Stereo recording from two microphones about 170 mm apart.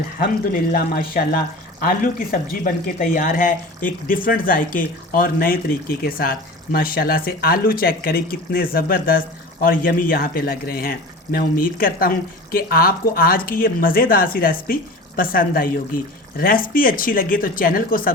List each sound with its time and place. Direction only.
0.2 s speech: 55° left (ahead or behind)